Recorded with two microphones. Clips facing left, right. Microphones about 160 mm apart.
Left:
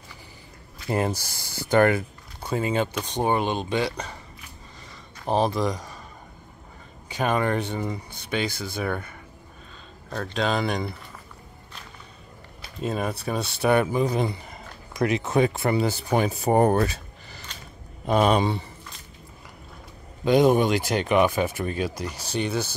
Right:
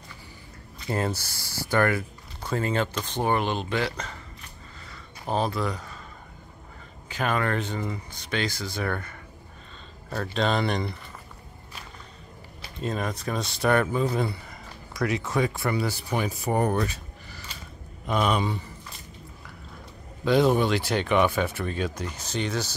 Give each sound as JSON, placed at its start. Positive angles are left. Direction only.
{"t": 0.8, "sound": "speech", "side_deg": 15}
{"t": 7.2, "sound": "speech", "side_deg": 15}
{"t": 10.0, "sound": "speech", "side_deg": -5}
{"t": 12.8, "sound": "speech", "side_deg": 10}
{"t": 20.2, "sound": "speech", "side_deg": 15}